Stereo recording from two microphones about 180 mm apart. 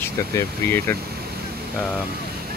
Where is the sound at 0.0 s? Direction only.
10° left (ahead or behind).